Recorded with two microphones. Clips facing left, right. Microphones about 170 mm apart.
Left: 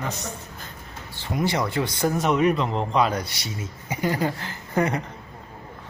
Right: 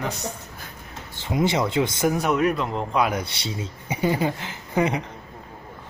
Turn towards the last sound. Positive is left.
turn(degrees=-15)  # may be behind; listen again after turning